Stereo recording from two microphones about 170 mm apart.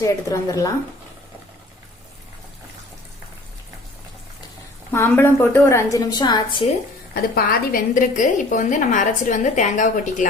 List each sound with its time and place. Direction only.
0.0 s a woman's voice: 20° left (ahead or behind)
4.9 s a woman's voice: 10° left (ahead or behind); by 6.7 s 30° left (ahead or behind)
7.1 s a woman's voice: 65° left (ahead or behind); by 10.2 s 45° left (ahead or behind)